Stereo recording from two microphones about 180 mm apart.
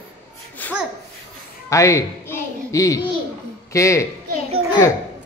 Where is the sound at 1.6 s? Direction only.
15° left (ahead or behind).